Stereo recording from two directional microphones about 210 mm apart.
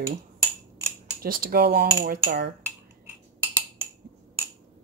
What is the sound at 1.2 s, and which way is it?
Speech, 45° right (ahead or behind).